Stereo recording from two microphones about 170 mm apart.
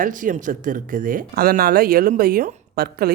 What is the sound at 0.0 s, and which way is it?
Speech, 50° right (ahead or behind).